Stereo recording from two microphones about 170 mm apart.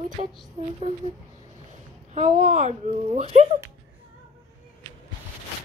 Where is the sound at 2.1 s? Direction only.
40° right (ahead or behind).